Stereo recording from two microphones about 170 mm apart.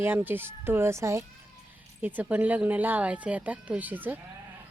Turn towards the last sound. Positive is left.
turn(degrees=-10)  # may be behind; listen again after turning